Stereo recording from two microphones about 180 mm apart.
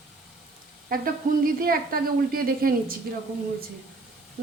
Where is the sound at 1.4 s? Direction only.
55° right (ahead or behind).